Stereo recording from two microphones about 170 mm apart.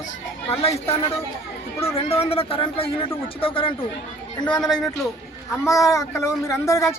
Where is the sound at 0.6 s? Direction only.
35° left (ahead or behind).